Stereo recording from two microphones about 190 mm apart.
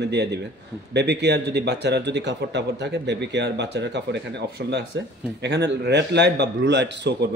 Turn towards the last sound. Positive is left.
turn(degrees=-65)  # may be behind; listen again after turning